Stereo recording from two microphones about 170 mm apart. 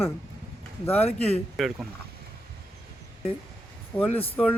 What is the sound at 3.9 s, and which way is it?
Speech, 10° left (ahead or behind).